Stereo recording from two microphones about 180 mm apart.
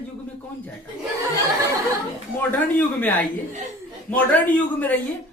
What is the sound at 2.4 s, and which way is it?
A man's voice, 10° left (ahead or behind).